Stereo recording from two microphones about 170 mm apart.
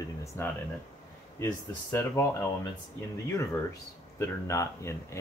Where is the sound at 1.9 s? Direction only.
15° left (ahead or behind).